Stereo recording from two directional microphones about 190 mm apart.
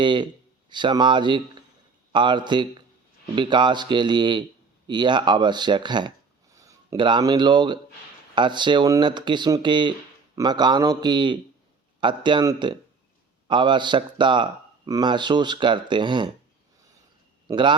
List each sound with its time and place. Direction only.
0.0 s speech: 25° right (ahead or behind)
17.5 s speech: 25° right (ahead or behind)